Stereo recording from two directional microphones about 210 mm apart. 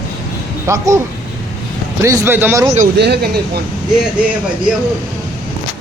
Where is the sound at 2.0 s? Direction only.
15° right (ahead or behind).